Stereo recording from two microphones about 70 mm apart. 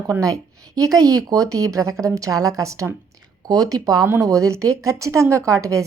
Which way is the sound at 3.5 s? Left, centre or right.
Right.